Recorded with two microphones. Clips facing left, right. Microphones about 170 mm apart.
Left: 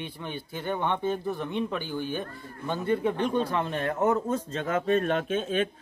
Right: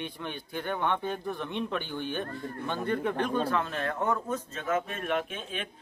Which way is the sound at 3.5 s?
30° left (ahead or behind).